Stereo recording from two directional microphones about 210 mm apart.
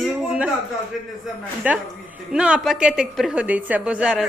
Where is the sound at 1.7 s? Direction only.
5° right (ahead or behind).